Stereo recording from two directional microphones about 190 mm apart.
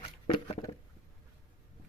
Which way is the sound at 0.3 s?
25° left (ahead or behind).